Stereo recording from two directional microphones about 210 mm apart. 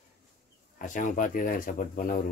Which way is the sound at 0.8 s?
40° left (ahead or behind).